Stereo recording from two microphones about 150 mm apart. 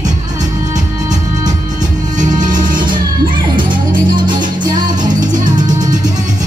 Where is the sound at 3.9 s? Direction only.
30° right (ahead or behind).